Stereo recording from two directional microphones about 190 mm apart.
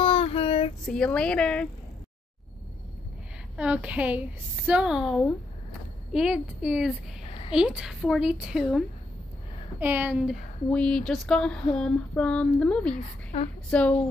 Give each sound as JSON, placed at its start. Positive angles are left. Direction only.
{"t": 0.0, "sound": "child singing", "side_deg": 30}
{"t": 0.8, "sound": "a woman's voice", "side_deg": 5}
{"t": 3.5, "sound": "a woman's voice", "side_deg": -5}
{"t": 7.2, "sound": "a sound", "side_deg": 30}
{"t": 7.5, "sound": "a woman's voice", "side_deg": -5}
{"t": 10.7, "sound": "a woman's voice", "side_deg": 5}
{"t": 12.9, "sound": "a woman's voice", "side_deg": 35}
{"t": 13.7, "sound": "speech", "side_deg": 5}